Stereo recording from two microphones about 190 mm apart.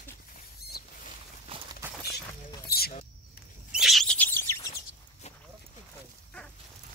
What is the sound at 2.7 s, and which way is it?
Speech, 55° left (ahead or behind).